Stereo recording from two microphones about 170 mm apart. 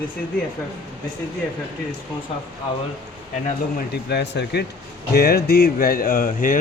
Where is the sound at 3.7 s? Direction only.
75° left (ahead or behind).